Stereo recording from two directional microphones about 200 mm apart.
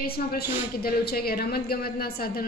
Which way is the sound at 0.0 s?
50° left (ahead or behind).